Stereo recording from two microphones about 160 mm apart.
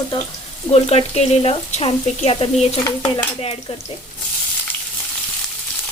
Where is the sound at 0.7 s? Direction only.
40° left (ahead or behind).